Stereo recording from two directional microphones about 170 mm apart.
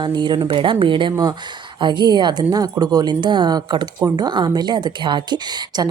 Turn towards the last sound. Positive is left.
turn(degrees=-25)  # may be behind; listen again after turning